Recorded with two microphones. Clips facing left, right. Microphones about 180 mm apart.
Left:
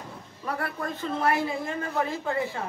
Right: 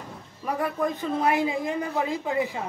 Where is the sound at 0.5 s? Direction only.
15° right (ahead or behind).